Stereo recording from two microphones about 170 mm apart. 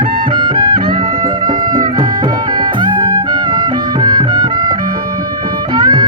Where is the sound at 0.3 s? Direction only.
25° right (ahead or behind).